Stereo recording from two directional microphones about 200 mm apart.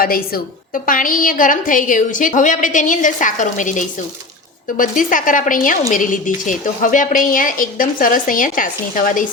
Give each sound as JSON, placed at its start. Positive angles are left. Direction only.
{"t": 0.0, "sound": "a woman's voice", "side_deg": 45}